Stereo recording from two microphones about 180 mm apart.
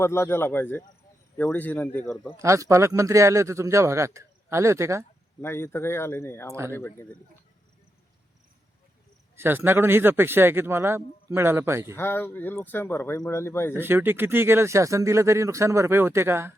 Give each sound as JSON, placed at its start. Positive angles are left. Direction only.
{"t": 0.0, "sound": "speech", "side_deg": 15}
{"t": 2.4, "sound": "speech", "side_deg": -15}
{"t": 5.4, "sound": "speech", "side_deg": 15}
{"t": 6.5, "sound": "speech", "side_deg": -15}
{"t": 6.7, "sound": "speech", "side_deg": 15}
{"t": 9.3, "sound": "speech", "side_deg": -10}
{"t": 11.9, "sound": "speech", "side_deg": 10}
{"t": 13.7, "sound": "speech", "side_deg": -10}